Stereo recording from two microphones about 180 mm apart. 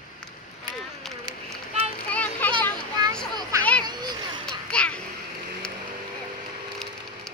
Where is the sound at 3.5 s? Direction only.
20° right (ahead or behind).